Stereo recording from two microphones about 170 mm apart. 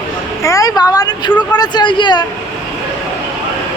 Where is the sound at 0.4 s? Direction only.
20° left (ahead or behind).